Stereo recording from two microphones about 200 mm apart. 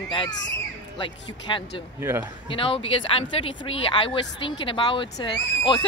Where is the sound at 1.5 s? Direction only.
25° left (ahead or behind).